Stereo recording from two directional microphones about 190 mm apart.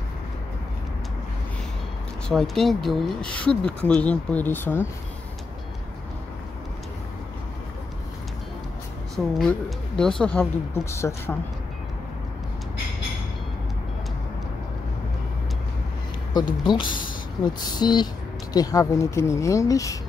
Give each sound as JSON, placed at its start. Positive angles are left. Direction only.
{"t": 2.2, "sound": "speech", "side_deg": 0}
{"t": 9.1, "sound": "a woman's voice", "side_deg": 5}
{"t": 16.6, "sound": "a woman's voice", "side_deg": 25}